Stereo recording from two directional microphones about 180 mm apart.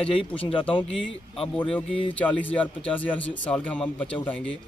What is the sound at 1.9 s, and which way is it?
Speech, 30° left (ahead or behind).